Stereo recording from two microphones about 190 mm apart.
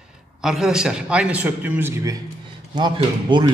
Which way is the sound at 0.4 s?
Centre (ahead or behind).